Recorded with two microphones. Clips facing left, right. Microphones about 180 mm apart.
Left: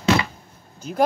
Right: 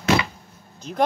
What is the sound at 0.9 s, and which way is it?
Speech, 5° left (ahead or behind).